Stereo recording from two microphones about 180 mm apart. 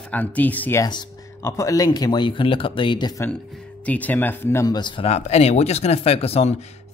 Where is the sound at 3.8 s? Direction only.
10° left (ahead or behind); by 6.6 s 35° left (ahead or behind).